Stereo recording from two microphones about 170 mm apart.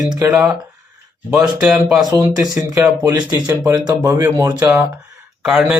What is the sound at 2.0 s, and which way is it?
A man's voice, 20° right (ahead or behind).